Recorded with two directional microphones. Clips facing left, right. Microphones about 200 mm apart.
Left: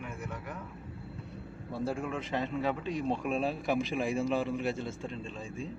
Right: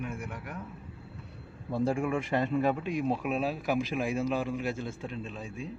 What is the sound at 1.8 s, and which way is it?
A man's voice, 15° right (ahead or behind).